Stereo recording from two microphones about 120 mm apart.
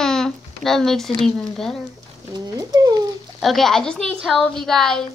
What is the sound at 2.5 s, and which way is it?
Speech, 35° right (ahead or behind).